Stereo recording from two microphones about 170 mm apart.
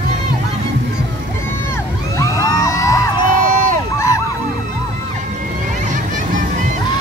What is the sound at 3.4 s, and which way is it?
Crowd, 50° right (ahead or behind).